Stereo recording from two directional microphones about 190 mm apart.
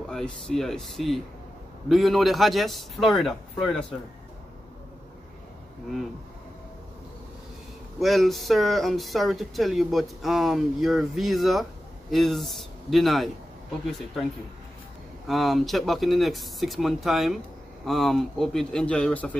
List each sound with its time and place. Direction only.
0.1 s speech: 5° left (ahead or behind)
8.0 s speech: centre (ahead or behind)
15.2 s speech: centre (ahead or behind)